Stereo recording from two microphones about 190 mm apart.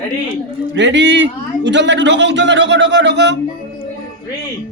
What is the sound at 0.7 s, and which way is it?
A man's voice, 70° right (ahead or behind).